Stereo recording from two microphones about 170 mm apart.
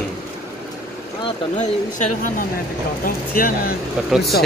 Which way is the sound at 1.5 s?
45° left (ahead or behind).